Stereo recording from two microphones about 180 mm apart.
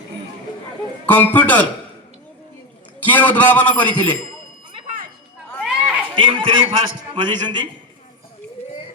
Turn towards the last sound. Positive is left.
turn(degrees=-25)  # may be behind; listen again after turning